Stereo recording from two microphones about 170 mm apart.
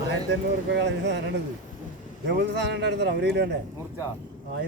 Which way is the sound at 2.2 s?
90° right.